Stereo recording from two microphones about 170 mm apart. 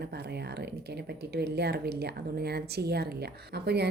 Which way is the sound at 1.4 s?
75° right (ahead or behind).